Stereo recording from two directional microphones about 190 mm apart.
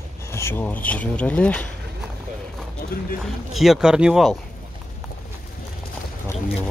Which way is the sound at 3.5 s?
Centre (ahead or behind).